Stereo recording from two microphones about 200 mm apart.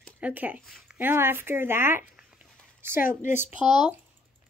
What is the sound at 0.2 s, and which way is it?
Speech, 10° right (ahead or behind).